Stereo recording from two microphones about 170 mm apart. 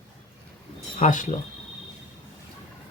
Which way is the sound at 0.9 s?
50° left (ahead or behind).